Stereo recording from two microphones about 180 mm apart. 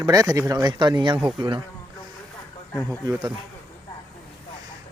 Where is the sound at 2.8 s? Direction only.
20° right (ahead or behind).